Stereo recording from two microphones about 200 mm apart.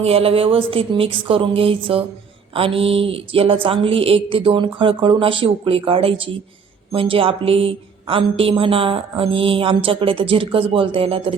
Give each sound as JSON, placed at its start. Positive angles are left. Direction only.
{"t": 0.0, "sound": "a woman's voice", "side_deg": -30}